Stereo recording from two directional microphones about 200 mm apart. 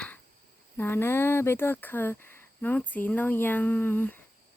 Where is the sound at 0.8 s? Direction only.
10° left (ahead or behind).